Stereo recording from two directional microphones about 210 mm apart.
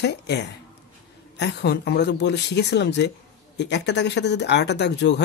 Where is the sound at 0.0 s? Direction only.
55° left (ahead or behind).